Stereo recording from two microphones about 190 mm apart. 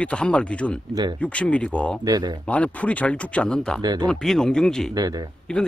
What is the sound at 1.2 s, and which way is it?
Speech, 5° left (ahead or behind).